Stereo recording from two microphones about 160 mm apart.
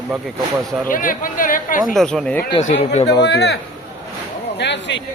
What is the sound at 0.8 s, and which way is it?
Speech, 60° left (ahead or behind).